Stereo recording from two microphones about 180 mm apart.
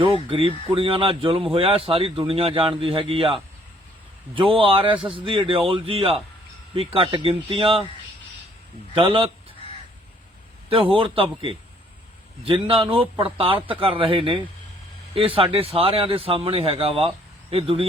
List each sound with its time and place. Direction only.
0.0 s a man's voice: 30° right (ahead or behind)
9.0 s a man's voice: 30° right (ahead or behind)
10.7 s a man's voice: 30° right (ahead or behind)